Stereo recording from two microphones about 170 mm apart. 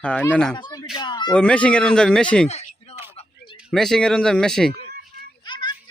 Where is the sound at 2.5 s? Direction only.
40° left (ahead or behind).